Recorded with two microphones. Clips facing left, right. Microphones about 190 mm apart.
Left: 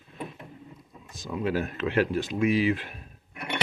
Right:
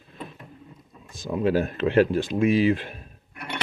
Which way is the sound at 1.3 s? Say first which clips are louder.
Right 5 dB; 30° right (ahead or behind).